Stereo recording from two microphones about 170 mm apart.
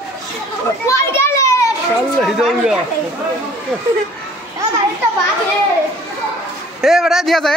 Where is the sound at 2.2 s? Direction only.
Centre (ahead or behind).